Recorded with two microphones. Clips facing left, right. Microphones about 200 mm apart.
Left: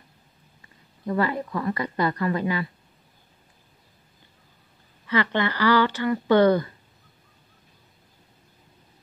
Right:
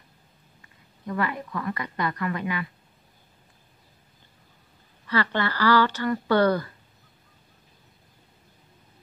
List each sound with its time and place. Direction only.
1.0 s a woman's voice: 30° left (ahead or behind)
5.0 s speech: 15° left (ahead or behind)